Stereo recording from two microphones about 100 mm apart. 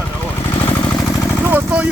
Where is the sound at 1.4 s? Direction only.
15° right (ahead or behind).